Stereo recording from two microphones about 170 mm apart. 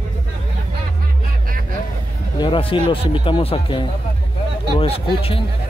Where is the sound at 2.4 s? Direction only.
30° left (ahead or behind).